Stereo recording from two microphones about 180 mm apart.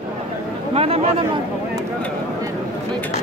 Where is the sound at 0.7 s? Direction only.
35° right (ahead or behind).